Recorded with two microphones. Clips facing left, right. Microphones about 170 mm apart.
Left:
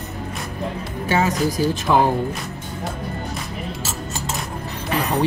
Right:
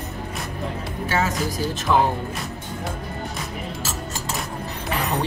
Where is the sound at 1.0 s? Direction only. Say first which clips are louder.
Left 4 dB; 15° left (ahead or behind).